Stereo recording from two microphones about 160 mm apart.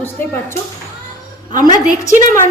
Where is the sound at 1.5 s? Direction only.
25° left (ahead or behind).